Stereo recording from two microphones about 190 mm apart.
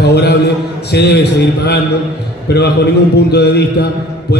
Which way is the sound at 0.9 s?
60° left (ahead or behind).